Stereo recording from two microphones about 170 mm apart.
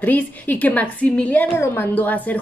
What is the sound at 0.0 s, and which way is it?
Speech, 10° left (ahead or behind).